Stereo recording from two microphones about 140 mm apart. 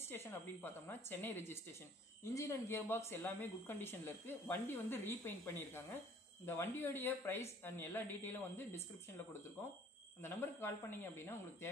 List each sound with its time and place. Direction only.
0.0 s speech: 15° left (ahead or behind)
10.2 s speech: 15° left (ahead or behind)